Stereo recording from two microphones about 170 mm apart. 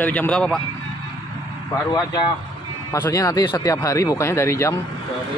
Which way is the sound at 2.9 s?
20° left (ahead or behind).